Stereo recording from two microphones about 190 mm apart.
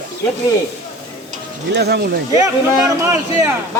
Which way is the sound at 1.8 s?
60° right (ahead or behind).